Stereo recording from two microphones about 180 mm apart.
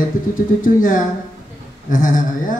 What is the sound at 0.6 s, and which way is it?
A man's voice, 50° left (ahead or behind).